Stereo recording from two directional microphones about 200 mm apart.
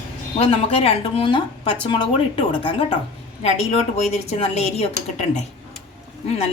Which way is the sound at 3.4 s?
35° left (ahead or behind).